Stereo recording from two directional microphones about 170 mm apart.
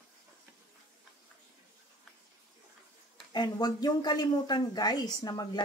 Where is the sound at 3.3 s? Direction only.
25° left (ahead or behind).